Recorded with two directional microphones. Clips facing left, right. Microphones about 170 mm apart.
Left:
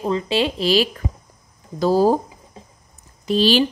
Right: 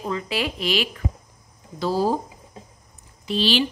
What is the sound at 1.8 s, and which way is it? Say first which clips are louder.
Speech: left 6 dB; 45° left (ahead or behind).